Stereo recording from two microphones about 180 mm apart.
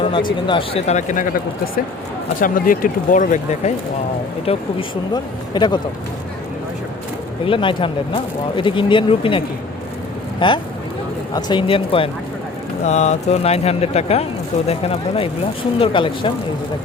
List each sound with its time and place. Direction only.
0.0 s speech: 25° left (ahead or behind); by 1.3 s 45° left (ahead or behind)
2.4 s speech: 50° left (ahead or behind)
4.4 s speech: 25° left (ahead or behind)
7.4 s speech: 30° left (ahead or behind)
10.4 s speech: 25° left (ahead or behind)